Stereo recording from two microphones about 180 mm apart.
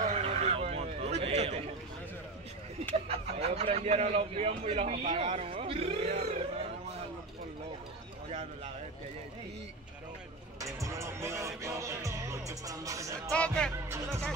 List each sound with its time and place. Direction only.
0.0 s a sound: 35° right (ahead or behind)
3.1 s speech: 35° right (ahead or behind)
10.6 s music: 15° right (ahead or behind)
13.3 s speech: 5° left (ahead or behind)